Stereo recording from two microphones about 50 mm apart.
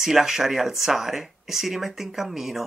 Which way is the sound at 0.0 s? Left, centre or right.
Centre.